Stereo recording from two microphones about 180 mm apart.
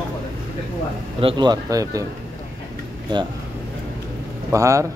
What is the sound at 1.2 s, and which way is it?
Speech, 25° right (ahead or behind).